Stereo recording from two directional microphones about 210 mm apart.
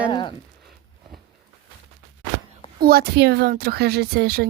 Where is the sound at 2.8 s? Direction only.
45° right (ahead or behind).